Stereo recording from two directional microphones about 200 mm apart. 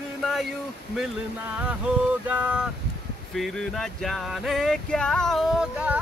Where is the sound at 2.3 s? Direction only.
10° right (ahead or behind).